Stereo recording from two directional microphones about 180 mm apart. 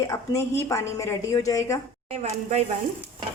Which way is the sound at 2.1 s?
35° right (ahead or behind).